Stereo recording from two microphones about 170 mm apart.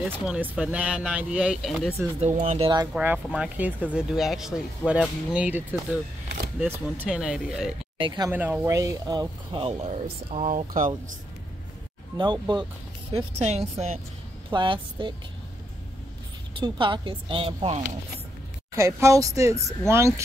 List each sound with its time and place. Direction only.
0.0 s speech: 5° right (ahead or behind)
2.1 s speech: 40° right (ahead or behind)
2.9 s speech: 10° right (ahead or behind)
9.6 s speech: 35° right (ahead or behind)
12.2 s speech: 25° right (ahead or behind)
13.1 s speech: 40° right (ahead or behind)
14.5 s speech: 30° right (ahead or behind)
16.5 s speech: 30° right (ahead or behind)
18.8 s speech: 15° right (ahead or behind)